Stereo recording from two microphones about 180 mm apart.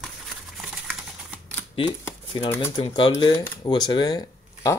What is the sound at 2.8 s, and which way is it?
Speech, 25° left (ahead or behind).